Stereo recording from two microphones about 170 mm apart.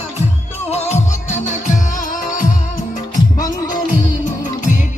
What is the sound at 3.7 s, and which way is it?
Music, 50° left (ahead or behind).